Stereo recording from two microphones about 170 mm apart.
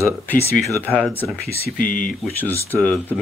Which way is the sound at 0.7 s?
10° left (ahead or behind).